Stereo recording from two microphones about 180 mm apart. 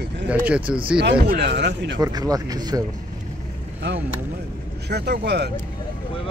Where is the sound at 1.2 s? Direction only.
70° right (ahead or behind).